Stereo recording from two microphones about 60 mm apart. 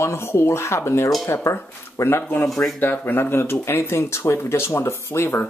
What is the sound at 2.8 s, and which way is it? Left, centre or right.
Speech, left.